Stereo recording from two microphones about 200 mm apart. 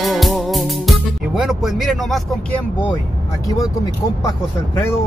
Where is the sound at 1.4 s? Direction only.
Centre (ahead or behind).